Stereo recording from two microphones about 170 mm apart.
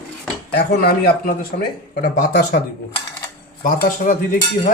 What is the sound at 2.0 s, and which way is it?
Speech, 55° left (ahead or behind).